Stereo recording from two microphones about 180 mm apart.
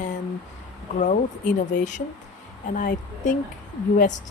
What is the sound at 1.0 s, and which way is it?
Speech, 45° left (ahead or behind).